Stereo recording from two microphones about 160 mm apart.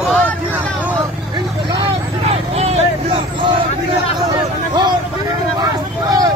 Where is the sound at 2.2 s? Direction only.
40° right (ahead or behind).